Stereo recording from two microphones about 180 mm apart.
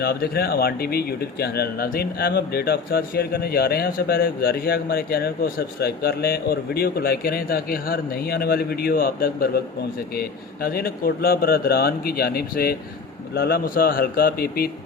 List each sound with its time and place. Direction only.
0.0 s speech: 60° left (ahead or behind)